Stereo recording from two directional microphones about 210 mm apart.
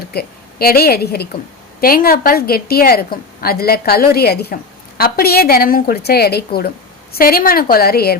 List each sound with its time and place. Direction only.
0.1 s a woman's voice: 50° left (ahead or behind)